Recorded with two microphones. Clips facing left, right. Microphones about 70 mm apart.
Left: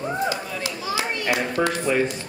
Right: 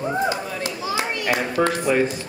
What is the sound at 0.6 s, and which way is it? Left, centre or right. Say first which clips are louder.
Children playing: right 2 dB; right.